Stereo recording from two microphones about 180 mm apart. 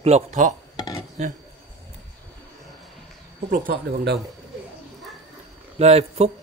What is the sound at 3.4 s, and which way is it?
Speech, 55° right (ahead or behind).